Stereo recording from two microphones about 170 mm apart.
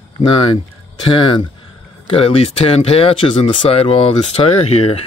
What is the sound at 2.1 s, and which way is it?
Speech, 35° left (ahead or behind).